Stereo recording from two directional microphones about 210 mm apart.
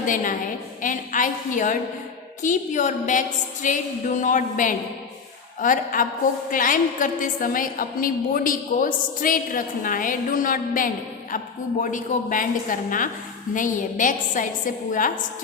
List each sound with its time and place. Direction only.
0.0 s a woman's voice: 40° left (ahead or behind)